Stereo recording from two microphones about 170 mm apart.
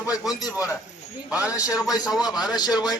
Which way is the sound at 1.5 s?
20° left (ahead or behind).